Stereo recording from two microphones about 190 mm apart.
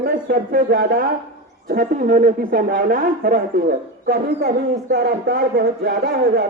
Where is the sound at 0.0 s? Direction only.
45° right (ahead or behind).